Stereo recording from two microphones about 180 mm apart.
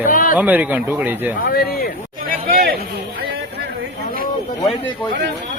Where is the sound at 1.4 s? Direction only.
55° left (ahead or behind).